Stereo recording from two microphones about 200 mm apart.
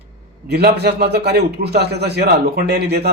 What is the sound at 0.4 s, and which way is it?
A man's voice, 55° right (ahead or behind).